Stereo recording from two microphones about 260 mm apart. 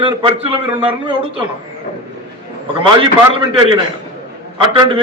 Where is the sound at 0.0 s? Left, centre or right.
Centre.